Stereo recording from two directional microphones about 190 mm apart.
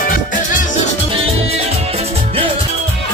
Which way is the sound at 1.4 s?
35° right (ahead or behind).